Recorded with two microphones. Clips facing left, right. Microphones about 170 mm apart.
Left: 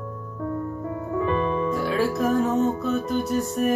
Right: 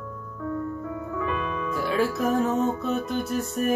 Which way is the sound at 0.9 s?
30° left (ahead or behind).